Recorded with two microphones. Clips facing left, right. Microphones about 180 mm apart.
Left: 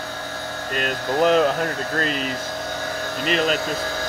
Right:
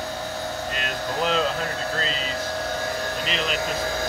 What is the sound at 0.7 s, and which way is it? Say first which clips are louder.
Speech: left 9 dB; 55° left (ahead or behind).